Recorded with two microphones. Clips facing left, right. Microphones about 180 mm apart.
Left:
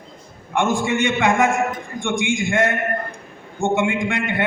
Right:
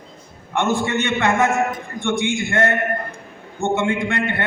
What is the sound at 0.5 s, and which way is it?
A man's voice, 15° left (ahead or behind).